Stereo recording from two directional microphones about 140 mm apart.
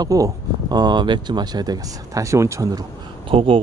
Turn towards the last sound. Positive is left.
turn(degrees=-40)  # may be behind; listen again after turning